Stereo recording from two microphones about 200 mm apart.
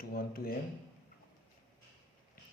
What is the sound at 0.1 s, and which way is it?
Speech, 50° left (ahead or behind).